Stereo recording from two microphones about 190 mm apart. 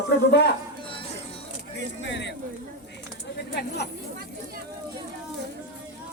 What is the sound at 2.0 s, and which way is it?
Speech, 70° left (ahead or behind).